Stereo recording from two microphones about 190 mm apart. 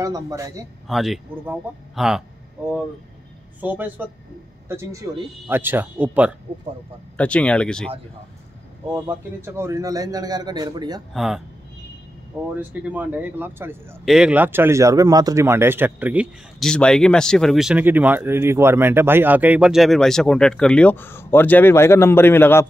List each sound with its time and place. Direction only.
0.0 s speech: 15° right (ahead or behind)
0.8 s speech: centre (ahead or behind)
3.6 s speech: 10° right (ahead or behind)
7.2 s speech: 5° left (ahead or behind)
8.9 s speech: 15° right (ahead or behind)
11.1 s speech: centre (ahead or behind)
12.5 s speech: 10° right (ahead or behind); by 22.7 s 10° left (ahead or behind)